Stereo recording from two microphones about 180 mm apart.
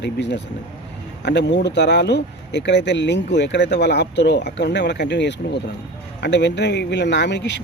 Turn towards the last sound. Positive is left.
turn(degrees=70)  # may be behind; listen again after turning